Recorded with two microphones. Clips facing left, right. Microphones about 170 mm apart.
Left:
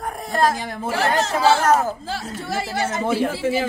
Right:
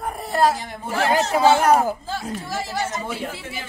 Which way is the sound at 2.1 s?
75° left (ahead or behind).